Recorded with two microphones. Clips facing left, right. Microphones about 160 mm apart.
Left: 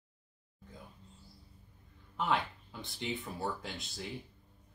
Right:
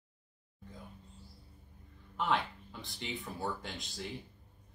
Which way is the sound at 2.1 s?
Centre (ahead or behind).